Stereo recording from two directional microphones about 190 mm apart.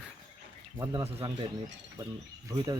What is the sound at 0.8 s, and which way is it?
Speech, 20° right (ahead or behind).